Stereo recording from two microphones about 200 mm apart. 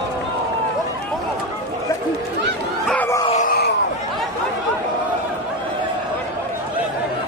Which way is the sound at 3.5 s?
55° left (ahead or behind).